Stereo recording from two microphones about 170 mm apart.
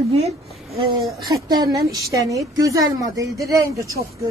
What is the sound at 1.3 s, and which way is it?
A woman's voice, 20° right (ahead or behind).